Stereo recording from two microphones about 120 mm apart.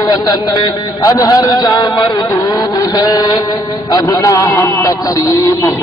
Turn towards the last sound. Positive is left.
turn(degrees=25)  # may be behind; listen again after turning